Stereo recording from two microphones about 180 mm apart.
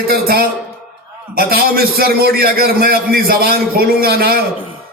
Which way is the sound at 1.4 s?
55° right (ahead or behind).